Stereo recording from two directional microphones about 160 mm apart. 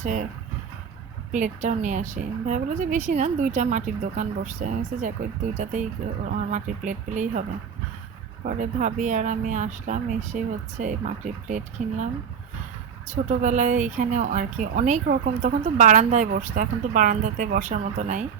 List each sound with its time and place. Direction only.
0.0 s a woman's voice: 50° right (ahead or behind)
1.3 s a woman's voice: 50° right (ahead or behind)
8.4 s a woman's voice: 50° right (ahead or behind)
13.2 s a woman's voice: 50° right (ahead or behind)